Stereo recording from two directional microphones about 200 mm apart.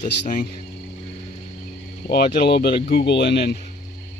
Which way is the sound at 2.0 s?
50° left (ahead or behind).